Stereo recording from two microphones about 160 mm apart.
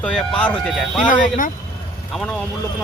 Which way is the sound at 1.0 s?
55° left (ahead or behind).